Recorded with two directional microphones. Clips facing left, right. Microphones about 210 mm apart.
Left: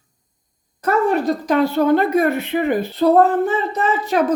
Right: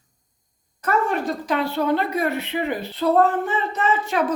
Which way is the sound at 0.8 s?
40° left (ahead or behind).